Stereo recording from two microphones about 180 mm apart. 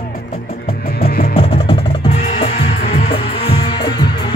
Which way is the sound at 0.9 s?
55° left (ahead or behind).